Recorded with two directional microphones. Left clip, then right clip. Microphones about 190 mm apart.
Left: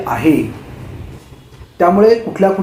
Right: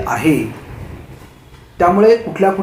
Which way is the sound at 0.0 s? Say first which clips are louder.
Even; 20° left (ahead or behind).